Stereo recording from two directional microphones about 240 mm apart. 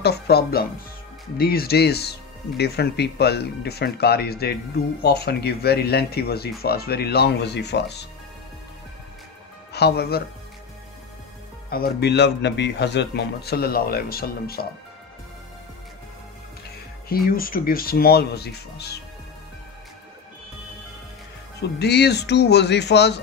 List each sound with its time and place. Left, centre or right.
0.0 s speech: left
9.7 s speech: left
11.7 s speech: left
17.3 s speech: left
21.5 s speech: left